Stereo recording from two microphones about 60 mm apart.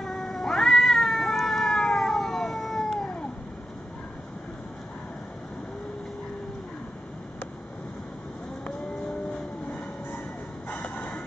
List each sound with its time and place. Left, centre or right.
0.0 s cat: centre
10.7 s music: left